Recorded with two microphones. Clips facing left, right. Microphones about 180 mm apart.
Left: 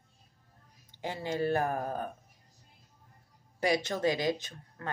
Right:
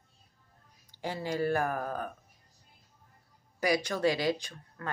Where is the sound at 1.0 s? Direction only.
20° left (ahead or behind).